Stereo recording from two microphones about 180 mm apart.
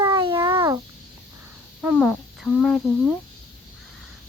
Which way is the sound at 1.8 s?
5° right (ahead or behind).